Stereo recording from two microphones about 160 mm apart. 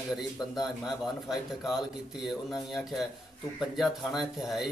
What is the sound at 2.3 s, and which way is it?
A man's voice, centre (ahead or behind).